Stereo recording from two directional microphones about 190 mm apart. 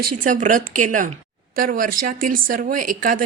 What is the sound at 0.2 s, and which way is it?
Speech, 45° right (ahead or behind).